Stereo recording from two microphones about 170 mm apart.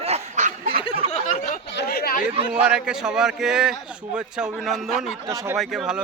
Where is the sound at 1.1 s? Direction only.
45° left (ahead or behind).